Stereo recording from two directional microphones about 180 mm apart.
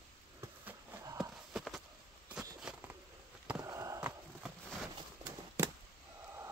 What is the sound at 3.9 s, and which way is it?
Horse, 5° right (ahead or behind).